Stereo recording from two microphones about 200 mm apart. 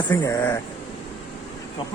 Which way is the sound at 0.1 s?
10° left (ahead or behind).